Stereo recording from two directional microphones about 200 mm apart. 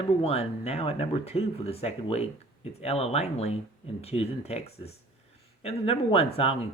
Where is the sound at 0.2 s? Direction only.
30° left (ahead or behind).